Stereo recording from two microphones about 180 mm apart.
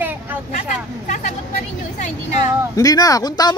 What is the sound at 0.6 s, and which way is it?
Speech, 40° left (ahead or behind).